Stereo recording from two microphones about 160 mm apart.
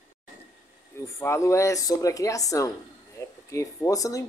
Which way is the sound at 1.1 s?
15° left (ahead or behind).